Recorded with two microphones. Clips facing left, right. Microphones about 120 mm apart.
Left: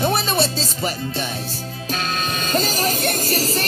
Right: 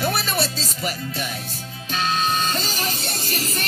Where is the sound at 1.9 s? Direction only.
50° left (ahead or behind).